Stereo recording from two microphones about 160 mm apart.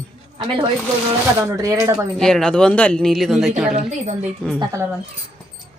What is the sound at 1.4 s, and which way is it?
Speech, 20° right (ahead or behind).